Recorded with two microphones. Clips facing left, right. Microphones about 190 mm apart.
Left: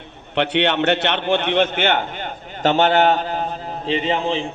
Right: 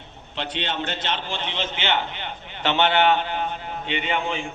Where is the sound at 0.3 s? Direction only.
65° left (ahead or behind).